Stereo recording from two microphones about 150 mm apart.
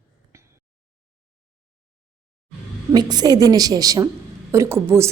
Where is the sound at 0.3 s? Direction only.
20° right (ahead or behind).